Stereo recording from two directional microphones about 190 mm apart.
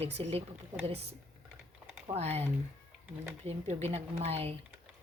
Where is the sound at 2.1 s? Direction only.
35° right (ahead or behind).